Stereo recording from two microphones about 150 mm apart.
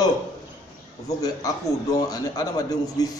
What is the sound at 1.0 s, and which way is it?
A man's voice, 25° left (ahead or behind).